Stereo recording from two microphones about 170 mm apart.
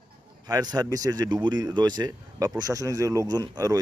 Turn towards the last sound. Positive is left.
turn(degrees=-20)  # may be behind; listen again after turning